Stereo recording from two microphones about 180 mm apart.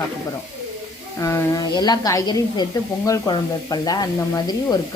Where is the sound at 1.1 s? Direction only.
15° left (ahead or behind).